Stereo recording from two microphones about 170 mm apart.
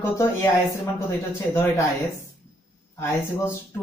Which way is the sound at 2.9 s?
15° left (ahead or behind).